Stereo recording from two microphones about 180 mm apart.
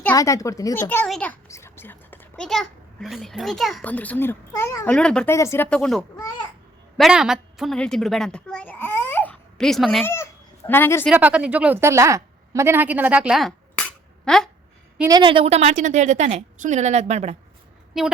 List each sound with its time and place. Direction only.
0.0 s a child's voice: 15° left (ahead or behind)
10.0 s speech: 15° left (ahead or behind)
11.1 s a woman's voice: 10° right (ahead or behind)
15.0 s a woman's voice: 25° right (ahead or behind)
18.0 s a woman's voice: centre (ahead or behind)